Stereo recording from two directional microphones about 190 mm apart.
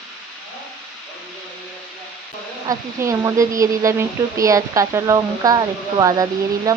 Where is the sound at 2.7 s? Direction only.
15° right (ahead or behind).